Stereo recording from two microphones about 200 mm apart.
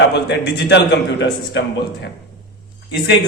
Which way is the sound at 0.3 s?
60° left (ahead or behind).